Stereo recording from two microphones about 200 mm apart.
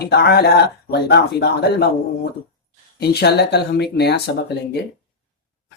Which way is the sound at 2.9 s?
55° left (ahead or behind).